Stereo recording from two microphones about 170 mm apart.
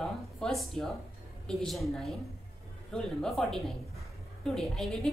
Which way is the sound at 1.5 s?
Centre (ahead or behind).